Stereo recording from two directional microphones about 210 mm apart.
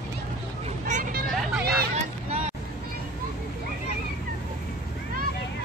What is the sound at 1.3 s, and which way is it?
Hubbub, 5° right (ahead or behind).